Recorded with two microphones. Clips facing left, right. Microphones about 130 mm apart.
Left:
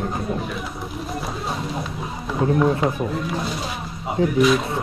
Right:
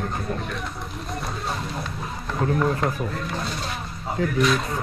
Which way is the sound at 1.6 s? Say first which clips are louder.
Left 3 dB; centre (ahead or behind).